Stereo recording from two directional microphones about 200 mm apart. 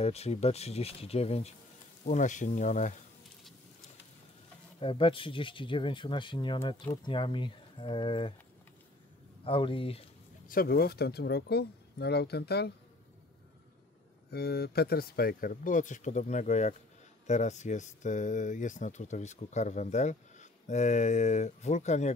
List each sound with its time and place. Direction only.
0.0 s speech: 30° left (ahead or behind)
4.7 s speech: 25° left (ahead or behind)
9.4 s speech: 25° left (ahead or behind)
10.5 s speech: 50° left (ahead or behind)
14.3 s speech: 50° left (ahead or behind); by 22.1 s 35° left (ahead or behind)